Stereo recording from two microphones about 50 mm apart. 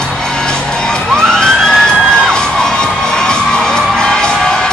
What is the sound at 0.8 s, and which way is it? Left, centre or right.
Emergency vehicle, centre.